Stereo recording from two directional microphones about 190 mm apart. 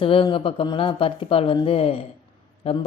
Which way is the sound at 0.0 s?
25° left (ahead or behind).